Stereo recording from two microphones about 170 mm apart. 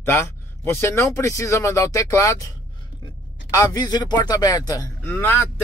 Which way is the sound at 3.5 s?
20° left (ahead or behind).